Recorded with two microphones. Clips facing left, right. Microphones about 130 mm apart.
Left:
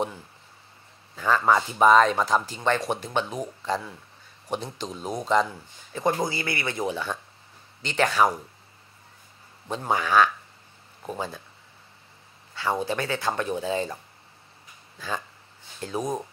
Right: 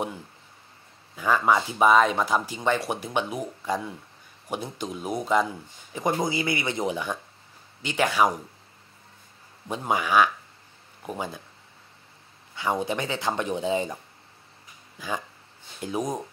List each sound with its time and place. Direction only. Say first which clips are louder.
1.1 s speech: even; 10° right (ahead or behind)
9.7 s speech: even; 10° right (ahead or behind)
12.5 s speech: even; 15° right (ahead or behind)
15.0 s speech: right 1 dB; 15° right (ahead or behind)